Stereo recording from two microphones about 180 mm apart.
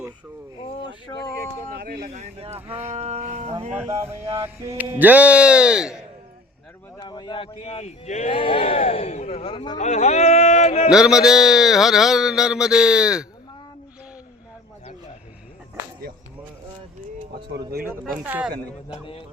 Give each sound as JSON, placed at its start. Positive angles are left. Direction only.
{"t": 0.5, "sound": "a sound", "side_deg": 25}
{"t": 1.1, "sound": "speech", "side_deg": 20}
{"t": 1.8, "sound": "speech", "side_deg": -55}
{"t": 2.9, "sound": "speech", "side_deg": -35}
{"t": 4.0, "sound": "speech", "side_deg": -15}
{"t": 7.0, "sound": "a man's voice", "side_deg": 25}
{"t": 10.8, "sound": "a man's voice", "side_deg": -5}
{"t": 18.3, "sound": "speech", "side_deg": -5}